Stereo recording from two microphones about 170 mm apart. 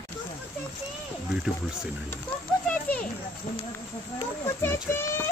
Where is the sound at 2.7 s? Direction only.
5° left (ahead or behind).